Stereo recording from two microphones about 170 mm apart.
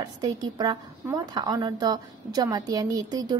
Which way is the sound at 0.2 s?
25° right (ahead or behind).